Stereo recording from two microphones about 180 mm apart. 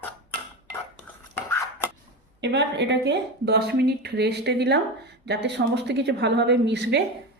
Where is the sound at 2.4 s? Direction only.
75° right (ahead or behind).